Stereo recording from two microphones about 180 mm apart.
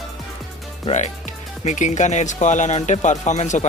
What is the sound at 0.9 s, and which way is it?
Speech, 40° left (ahead or behind).